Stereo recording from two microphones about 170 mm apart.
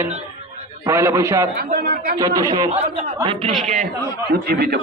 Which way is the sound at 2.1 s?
20° right (ahead or behind).